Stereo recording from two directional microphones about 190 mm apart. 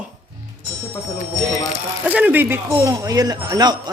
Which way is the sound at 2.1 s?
10° right (ahead or behind).